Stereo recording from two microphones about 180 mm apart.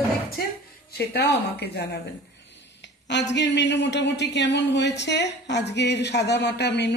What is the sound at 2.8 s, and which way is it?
Speech, 75° left (ahead or behind).